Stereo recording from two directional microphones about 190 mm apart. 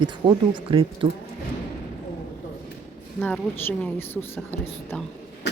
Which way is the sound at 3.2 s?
10° left (ahead or behind).